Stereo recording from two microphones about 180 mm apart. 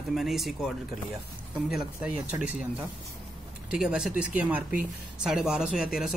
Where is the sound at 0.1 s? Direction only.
Centre (ahead or behind).